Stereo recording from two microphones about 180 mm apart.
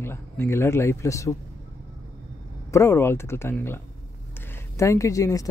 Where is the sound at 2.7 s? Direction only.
15° left (ahead or behind).